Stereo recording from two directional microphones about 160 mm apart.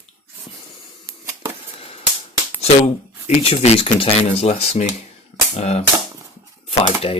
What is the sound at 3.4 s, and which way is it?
Speech, 35° left (ahead or behind).